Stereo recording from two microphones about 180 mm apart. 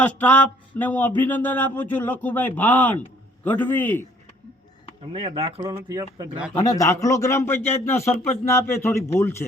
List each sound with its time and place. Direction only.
0.0 s a man's voice: 10° left (ahead or behind)
5.1 s speech: 30° right (ahead or behind)
6.6 s a man's voice: 20° left (ahead or behind)